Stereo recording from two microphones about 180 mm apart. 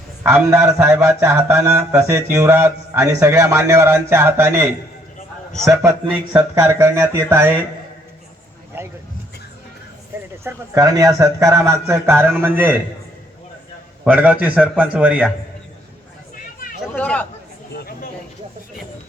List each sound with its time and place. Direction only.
0.2 s a man's voice: 15° right (ahead or behind)
10.4 s a man's voice: 20° right (ahead or behind)
14.0 s a man's voice: 5° right (ahead or behind)
16.9 s speech: 10° left (ahead or behind)
17.7 s a sound: 55° left (ahead or behind)